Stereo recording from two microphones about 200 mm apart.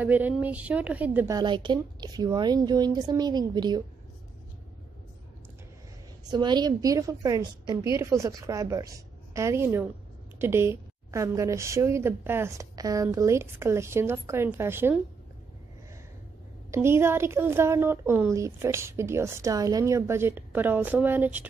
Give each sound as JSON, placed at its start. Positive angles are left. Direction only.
{"t": 0.0, "sound": "speech", "side_deg": -10}
{"t": 6.3, "sound": "speech", "side_deg": -20}
{"t": 16.7, "sound": "speech", "side_deg": -10}